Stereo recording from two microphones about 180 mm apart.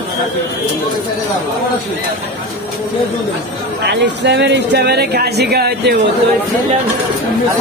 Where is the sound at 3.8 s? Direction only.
70° right (ahead or behind).